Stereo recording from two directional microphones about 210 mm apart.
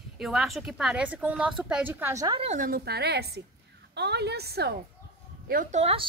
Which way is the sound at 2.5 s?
40° right (ahead or behind).